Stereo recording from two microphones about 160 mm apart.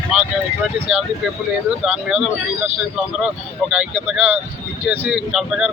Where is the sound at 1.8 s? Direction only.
5° right (ahead or behind).